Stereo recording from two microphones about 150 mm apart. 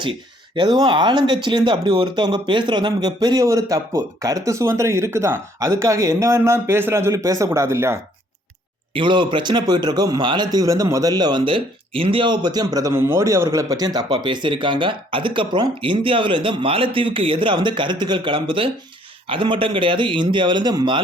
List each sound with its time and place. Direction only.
0.0 s speech: 30° right (ahead or behind)
8.9 s speech: 35° right (ahead or behind)